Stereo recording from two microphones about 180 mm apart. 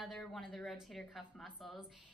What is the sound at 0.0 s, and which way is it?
A woman's voice, centre (ahead or behind).